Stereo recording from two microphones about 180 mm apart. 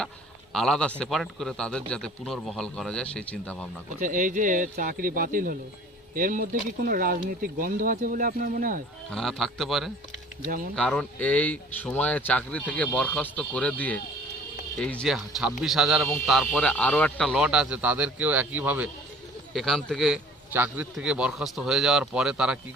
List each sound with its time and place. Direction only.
0.5 s a man's voice: 5° left (ahead or behind)
4.0 s speech: 45° right (ahead or behind)
9.0 s a man's voice: centre (ahead or behind)
19.5 s a man's voice: centre (ahead or behind)